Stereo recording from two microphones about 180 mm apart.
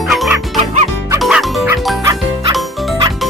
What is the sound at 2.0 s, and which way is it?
Music, 20° right (ahead or behind).